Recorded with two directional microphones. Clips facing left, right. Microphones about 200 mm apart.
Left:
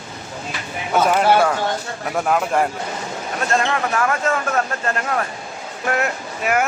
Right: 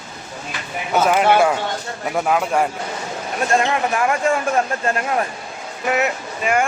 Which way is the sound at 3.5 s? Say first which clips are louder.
Right 2 dB; 15° right (ahead or behind).